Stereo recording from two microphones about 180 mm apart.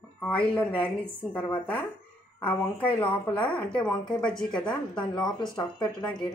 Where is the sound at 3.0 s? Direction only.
10° left (ahead or behind).